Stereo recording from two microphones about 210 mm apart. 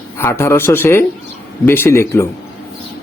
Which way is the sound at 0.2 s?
10° left (ahead or behind).